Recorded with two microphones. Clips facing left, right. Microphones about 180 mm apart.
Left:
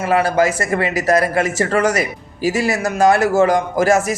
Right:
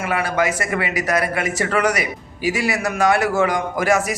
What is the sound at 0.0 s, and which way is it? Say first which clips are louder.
A man's voice: left 5 dB; 35° left (ahead or behind).